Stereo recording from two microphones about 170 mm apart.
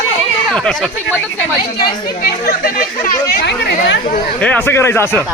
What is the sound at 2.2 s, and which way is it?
Speech, 60° left (ahead or behind).